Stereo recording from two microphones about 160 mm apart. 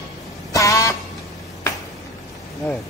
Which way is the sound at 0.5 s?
20° left (ahead or behind).